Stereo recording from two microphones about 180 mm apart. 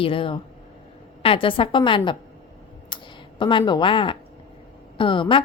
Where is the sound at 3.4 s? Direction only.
25° left (ahead or behind).